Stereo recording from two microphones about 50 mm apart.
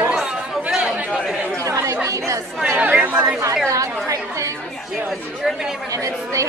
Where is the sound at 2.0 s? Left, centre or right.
Right.